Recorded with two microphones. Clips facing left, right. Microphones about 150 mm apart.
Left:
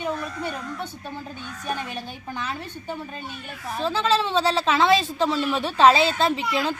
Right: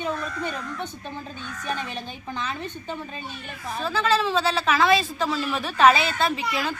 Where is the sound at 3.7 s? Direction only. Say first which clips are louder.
Left 1 dB; 25° left (ahead or behind).